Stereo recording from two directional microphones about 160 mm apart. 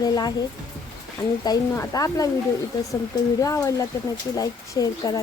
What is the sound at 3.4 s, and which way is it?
Speech, 20° left (ahead or behind).